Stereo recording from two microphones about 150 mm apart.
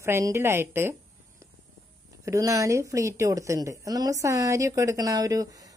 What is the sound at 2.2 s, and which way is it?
Speech, 20° right (ahead or behind).